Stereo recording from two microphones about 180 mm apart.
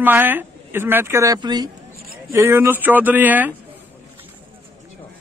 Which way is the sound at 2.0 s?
55° right (ahead or behind).